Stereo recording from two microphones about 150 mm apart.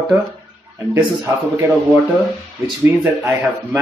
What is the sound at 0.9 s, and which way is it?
Speech, 15° right (ahead or behind).